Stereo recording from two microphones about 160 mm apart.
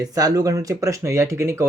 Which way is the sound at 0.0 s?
20° right (ahead or behind).